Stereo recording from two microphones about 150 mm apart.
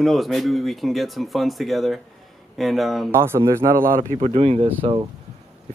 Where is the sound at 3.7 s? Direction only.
70° right (ahead or behind).